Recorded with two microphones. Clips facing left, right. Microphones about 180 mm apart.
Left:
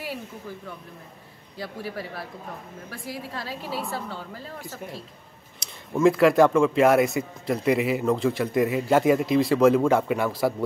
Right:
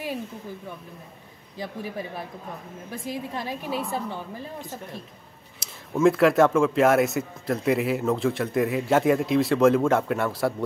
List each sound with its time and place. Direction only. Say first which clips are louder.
1.6 s a woman's voice: right 1 dB; 20° right (ahead or behind)
5.6 s speech: even; centre (ahead or behind)